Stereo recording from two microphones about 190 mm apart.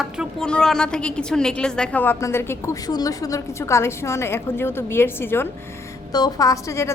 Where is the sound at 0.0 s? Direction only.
Centre (ahead or behind).